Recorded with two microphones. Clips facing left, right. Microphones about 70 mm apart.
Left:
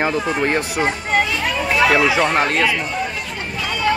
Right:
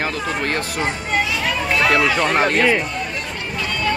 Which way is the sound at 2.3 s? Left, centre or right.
Centre.